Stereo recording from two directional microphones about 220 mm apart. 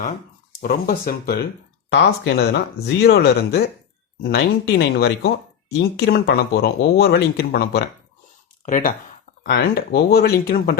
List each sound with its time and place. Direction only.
0.6 s speech: 40° left (ahead or behind)